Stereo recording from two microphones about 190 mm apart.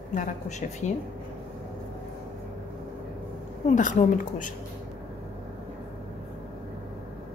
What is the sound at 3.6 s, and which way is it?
Speech, 40° left (ahead or behind).